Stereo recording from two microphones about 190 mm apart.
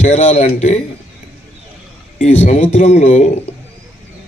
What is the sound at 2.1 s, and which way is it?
A man's voice, 35° left (ahead or behind).